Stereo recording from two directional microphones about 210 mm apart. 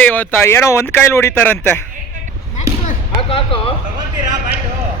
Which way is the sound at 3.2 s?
25° left (ahead or behind).